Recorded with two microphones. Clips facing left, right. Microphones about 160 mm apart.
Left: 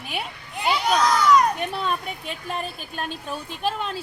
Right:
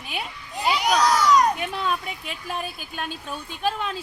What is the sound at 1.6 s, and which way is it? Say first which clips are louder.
A woman's voice: even; centre (ahead or behind).